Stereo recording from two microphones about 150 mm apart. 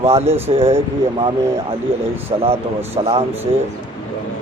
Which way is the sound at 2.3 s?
30° right (ahead or behind).